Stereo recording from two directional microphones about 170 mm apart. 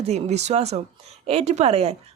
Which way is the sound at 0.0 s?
40° right (ahead or behind).